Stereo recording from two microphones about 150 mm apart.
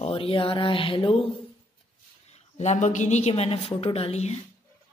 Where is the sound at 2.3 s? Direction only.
50° left (ahead or behind).